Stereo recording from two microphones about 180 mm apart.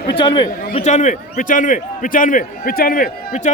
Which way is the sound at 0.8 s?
40° left (ahead or behind).